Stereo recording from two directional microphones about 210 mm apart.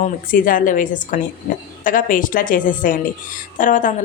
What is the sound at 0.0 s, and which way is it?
Speech, 40° left (ahead or behind).